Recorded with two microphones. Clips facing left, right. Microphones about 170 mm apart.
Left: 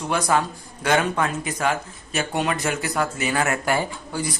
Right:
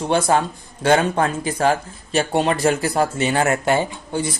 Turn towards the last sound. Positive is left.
turn(degrees=-25)  # may be behind; listen again after turning